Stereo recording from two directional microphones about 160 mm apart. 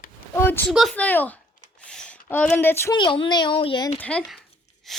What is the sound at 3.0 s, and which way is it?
A child's voice, 30° left (ahead or behind).